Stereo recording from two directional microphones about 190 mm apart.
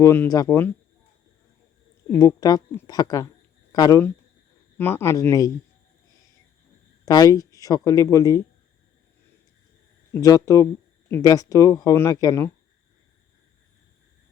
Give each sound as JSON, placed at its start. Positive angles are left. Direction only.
{"t": 0.0, "sound": "speech", "side_deg": 15}
{"t": 2.0, "sound": "speech", "side_deg": 20}
{"t": 7.0, "sound": "speech", "side_deg": 20}
{"t": 10.1, "sound": "speech", "side_deg": 20}